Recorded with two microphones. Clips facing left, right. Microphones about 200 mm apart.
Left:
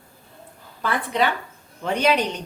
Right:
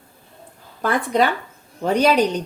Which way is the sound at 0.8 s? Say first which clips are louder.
Right 4 dB; 45° right (ahead or behind).